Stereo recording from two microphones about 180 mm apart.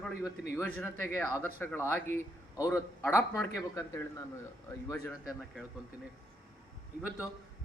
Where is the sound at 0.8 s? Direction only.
15° left (ahead or behind).